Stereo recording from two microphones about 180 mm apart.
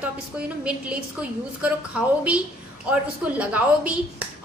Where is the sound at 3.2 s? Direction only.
5° right (ahead or behind).